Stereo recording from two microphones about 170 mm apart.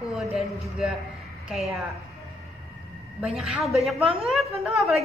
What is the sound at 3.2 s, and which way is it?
A woman's voice, 5° right (ahead or behind).